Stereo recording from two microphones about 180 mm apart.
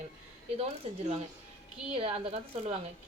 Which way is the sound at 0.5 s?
35° right (ahead or behind).